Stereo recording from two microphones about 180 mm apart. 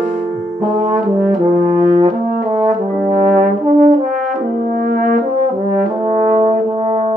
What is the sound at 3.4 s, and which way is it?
Brass instrument, 45° right (ahead or behind).